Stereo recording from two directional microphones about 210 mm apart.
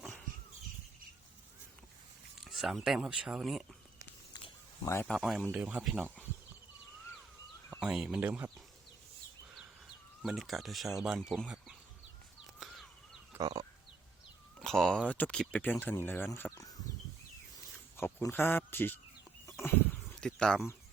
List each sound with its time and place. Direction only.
0.0 s a sound: 5° left (ahead or behind)
2.4 s speech: centre (ahead or behind)
4.3 s a sound: 15° left (ahead or behind)
5.0 s speech: centre (ahead or behind)
7.8 s speech: 5° right (ahead or behind)
10.2 s speech: centre (ahead or behind)
12.5 s crow: centre (ahead or behind)
13.3 s a sound: 15° right (ahead or behind)
14.6 s speech: centre (ahead or behind)
17.9 s speech: 10° left (ahead or behind)
19.5 s chicken: 15° left (ahead or behind)
20.2 s speech: 5° left (ahead or behind)